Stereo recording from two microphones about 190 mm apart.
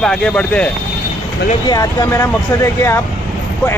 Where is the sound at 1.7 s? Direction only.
20° left (ahead or behind).